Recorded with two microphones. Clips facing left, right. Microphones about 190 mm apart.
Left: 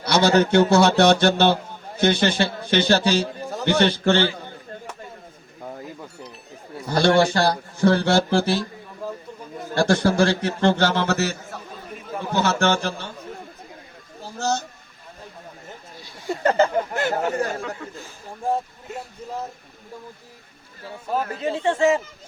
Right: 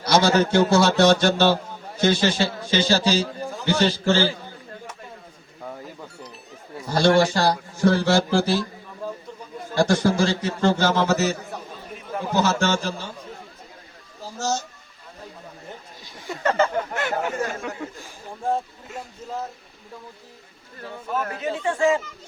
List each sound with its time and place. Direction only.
0.0 s speech: 60° left (ahead or behind)
6.9 s speech: 60° left (ahead or behind)
9.9 s speech: 60° left (ahead or behind)
14.3 s speech: 60° left (ahead or behind)
16.3 s speech: 35° left (ahead or behind)
17.6 s speech: 15° right (ahead or behind)
21.1 s speech: 30° left (ahead or behind)